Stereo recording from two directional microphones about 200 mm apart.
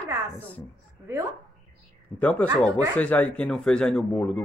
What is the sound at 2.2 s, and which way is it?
Speech, 5° left (ahead or behind).